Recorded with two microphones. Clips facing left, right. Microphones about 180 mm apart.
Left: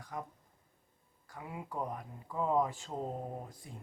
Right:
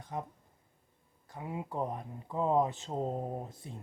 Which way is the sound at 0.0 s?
25° right (ahead or behind).